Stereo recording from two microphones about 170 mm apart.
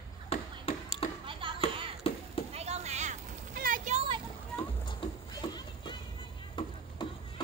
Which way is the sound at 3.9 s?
35° right (ahead or behind).